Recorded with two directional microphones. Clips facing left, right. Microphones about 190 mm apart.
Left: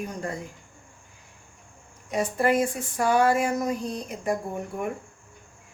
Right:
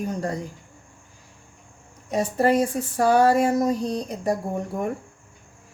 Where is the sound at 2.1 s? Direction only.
35° right (ahead or behind).